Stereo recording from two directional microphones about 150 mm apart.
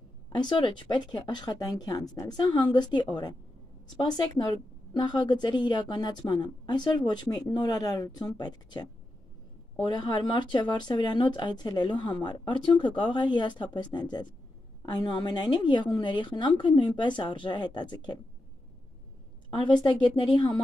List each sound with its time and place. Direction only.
0.4 s speech: 30° left (ahead or behind)
4.9 s speech: 30° left (ahead or behind)
19.5 s speech: 30° left (ahead or behind)